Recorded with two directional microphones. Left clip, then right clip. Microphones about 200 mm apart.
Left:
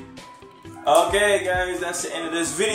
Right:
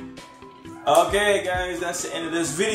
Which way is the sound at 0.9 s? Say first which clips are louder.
Left 1 dB; centre (ahead or behind).